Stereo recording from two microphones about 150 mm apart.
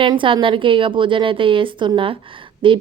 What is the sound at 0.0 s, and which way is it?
A woman's voice, 35° right (ahead or behind).